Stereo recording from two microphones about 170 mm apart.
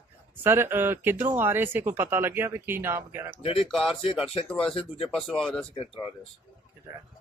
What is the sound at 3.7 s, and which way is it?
Speech, centre (ahead or behind).